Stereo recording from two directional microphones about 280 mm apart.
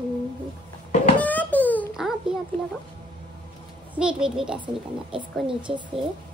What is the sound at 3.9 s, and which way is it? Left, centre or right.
A child's voice, centre.